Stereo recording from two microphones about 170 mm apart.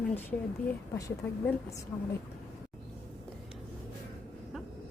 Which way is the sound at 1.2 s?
15° left (ahead or behind).